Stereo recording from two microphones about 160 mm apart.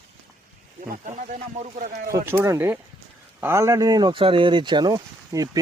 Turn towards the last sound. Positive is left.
turn(degrees=-20)  # may be behind; listen again after turning